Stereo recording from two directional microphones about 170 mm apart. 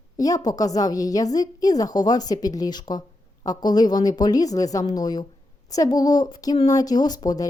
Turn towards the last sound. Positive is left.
turn(degrees=25)  # may be behind; listen again after turning